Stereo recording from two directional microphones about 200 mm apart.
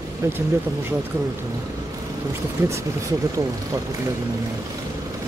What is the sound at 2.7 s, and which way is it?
Speech, 15° right (ahead or behind).